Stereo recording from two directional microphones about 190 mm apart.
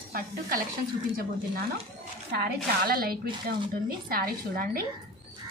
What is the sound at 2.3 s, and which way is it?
Speech, 55° right (ahead or behind).